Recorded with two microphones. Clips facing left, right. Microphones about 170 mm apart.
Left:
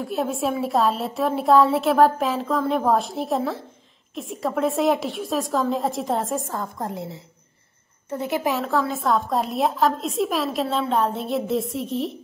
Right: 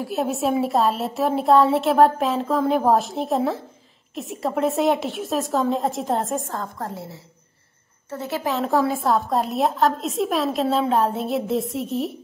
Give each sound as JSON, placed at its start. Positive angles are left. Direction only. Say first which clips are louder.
{"t": 0.0, "sound": "a woman's voice", "louder": "right 1 dB", "side_deg": 0}
{"t": 6.5, "sound": "a woman's voice", "louder": "left 1 dB", "side_deg": 15}
{"t": 8.1, "sound": "a woman's voice", "louder": "left 2 dB", "side_deg": 15}
{"t": 8.8, "sound": "a woman's voice", "louder": "right 2 dB", "side_deg": -5}